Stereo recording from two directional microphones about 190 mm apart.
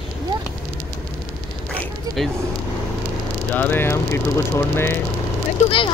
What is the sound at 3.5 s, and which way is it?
Speech, 10° left (ahead or behind).